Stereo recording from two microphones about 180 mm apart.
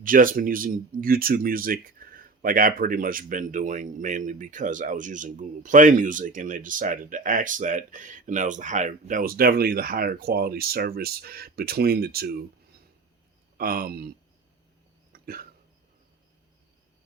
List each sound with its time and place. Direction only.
0.0 s speech: 50° right (ahead or behind)
13.6 s speech: 55° right (ahead or behind)
15.1 s hiccup: 55° right (ahead or behind)